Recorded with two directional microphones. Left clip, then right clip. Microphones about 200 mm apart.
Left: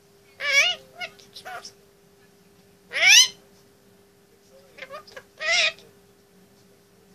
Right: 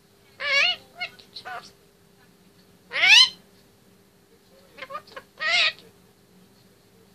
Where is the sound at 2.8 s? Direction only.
15° right (ahead or behind).